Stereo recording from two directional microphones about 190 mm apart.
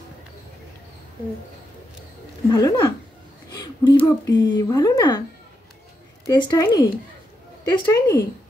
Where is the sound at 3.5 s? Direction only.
20° left (ahead or behind).